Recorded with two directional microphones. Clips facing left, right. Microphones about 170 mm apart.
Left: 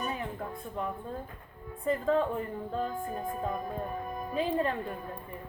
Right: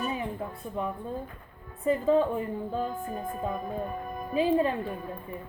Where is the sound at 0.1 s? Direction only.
15° right (ahead or behind).